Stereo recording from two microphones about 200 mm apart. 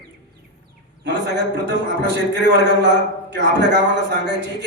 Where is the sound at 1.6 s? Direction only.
60° right (ahead or behind).